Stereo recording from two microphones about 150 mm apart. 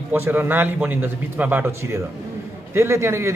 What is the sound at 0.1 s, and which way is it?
A man's voice, 15° right (ahead or behind).